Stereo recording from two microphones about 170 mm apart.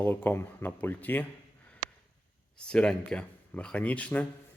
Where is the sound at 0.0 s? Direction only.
10° left (ahead or behind).